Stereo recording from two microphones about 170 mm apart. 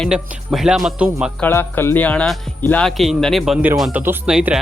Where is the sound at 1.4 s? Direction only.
10° left (ahead or behind).